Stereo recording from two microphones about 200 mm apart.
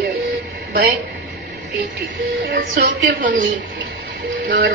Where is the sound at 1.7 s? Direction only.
60° right (ahead or behind).